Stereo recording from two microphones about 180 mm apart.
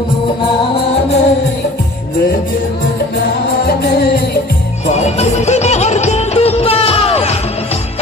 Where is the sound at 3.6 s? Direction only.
60° left (ahead or behind).